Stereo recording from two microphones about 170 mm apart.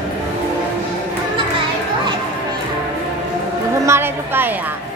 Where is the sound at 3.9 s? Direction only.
15° right (ahead or behind).